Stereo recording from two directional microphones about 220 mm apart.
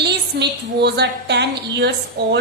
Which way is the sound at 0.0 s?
50° right (ahead or behind).